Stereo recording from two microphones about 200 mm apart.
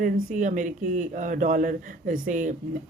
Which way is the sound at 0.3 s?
40° right (ahead or behind).